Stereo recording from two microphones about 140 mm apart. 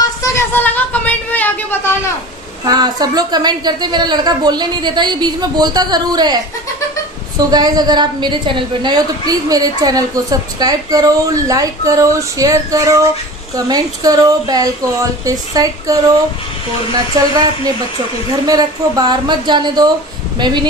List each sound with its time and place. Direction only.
0.2 s a sound: 20° left (ahead or behind)
2.6 s a woman's voice: 30° right (ahead or behind)
16.9 s a woman's voice: 30° right (ahead or behind)